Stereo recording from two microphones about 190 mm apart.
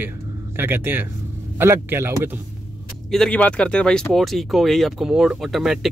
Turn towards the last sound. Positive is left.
turn(degrees=0)  # may be behind; listen again after turning